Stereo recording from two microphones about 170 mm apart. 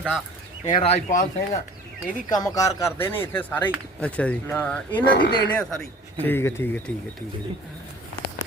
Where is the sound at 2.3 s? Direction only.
20° left (ahead or behind).